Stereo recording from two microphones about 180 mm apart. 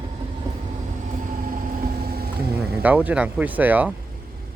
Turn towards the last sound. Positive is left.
turn(degrees=-10)  # may be behind; listen again after turning